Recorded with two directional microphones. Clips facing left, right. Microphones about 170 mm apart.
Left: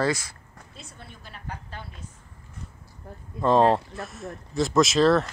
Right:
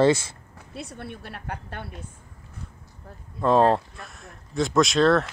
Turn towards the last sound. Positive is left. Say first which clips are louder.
# even
turn(degrees=0)  # may be behind; listen again after turning